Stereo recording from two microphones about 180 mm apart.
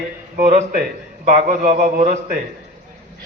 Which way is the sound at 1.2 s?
50° right (ahead or behind).